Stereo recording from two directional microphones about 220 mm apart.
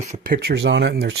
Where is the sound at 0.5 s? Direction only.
50° right (ahead or behind).